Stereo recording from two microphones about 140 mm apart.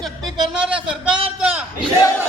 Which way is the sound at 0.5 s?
5° right (ahead or behind).